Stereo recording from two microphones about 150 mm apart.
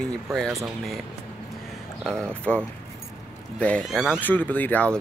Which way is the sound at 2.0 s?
5° left (ahead or behind).